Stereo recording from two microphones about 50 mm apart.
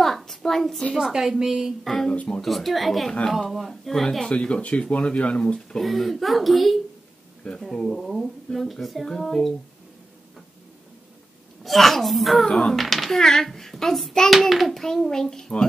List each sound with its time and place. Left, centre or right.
0.0 s a sound: centre
0.9 s a woman's voice: centre
1.9 s a child's voice: centre
4.4 s a child's voice: left
5.8 s a child's voice: centre
7.4 s speech: left
7.9 s a child's voice: centre
8.5 s speech: left
9.2 s a child's voice: centre
11.6 s a child's voice: centre